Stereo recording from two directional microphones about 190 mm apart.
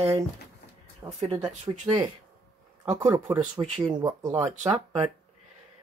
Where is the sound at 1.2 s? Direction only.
30° right (ahead or behind).